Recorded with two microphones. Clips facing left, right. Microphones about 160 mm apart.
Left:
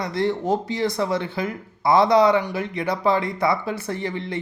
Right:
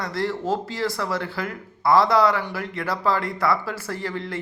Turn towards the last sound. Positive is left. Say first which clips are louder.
# left 2 dB
turn(degrees=20)  # may be behind; listen again after turning